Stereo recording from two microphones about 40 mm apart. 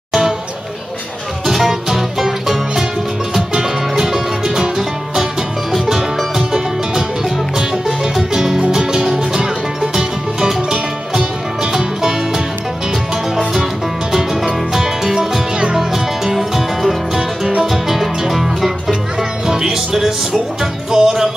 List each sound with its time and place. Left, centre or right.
1.4 s music: centre
14.1 s music: centre
19.4 s music: centre